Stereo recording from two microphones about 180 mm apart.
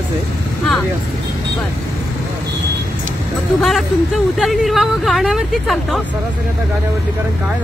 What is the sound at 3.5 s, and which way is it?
Speech, centre (ahead or behind).